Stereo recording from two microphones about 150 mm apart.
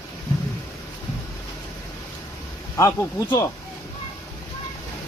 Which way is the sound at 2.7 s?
25° left (ahead or behind).